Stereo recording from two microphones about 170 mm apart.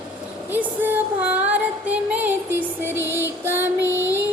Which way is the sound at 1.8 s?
10° right (ahead or behind).